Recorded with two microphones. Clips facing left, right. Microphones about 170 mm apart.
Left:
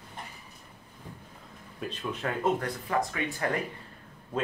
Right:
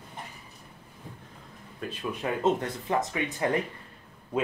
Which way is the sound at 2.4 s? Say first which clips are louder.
Right 2 dB; 25° right (ahead or behind).